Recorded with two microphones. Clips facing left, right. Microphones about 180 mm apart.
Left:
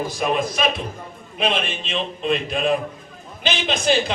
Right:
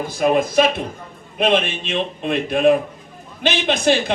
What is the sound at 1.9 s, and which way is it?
A man's voice, 55° right (ahead or behind).